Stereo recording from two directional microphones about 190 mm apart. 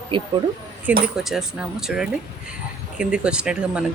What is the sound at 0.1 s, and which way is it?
Speech, 25° right (ahead or behind).